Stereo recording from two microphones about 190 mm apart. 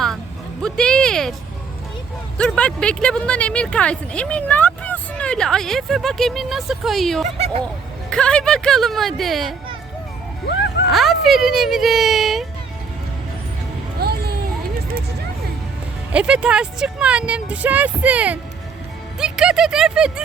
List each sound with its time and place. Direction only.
0.6 s speech: 5° left (ahead or behind)
2.4 s speech: 5° left (ahead or behind)
7.3 s speech: 30° right (ahead or behind)
8.1 s speech: 5° left (ahead or behind)
10.4 s music: 70° left (ahead or behind)
10.9 s speech: centre (ahead or behind)
14.0 s a sound: 55° right (ahead or behind)
16.1 s speech: 5° right (ahead or behind)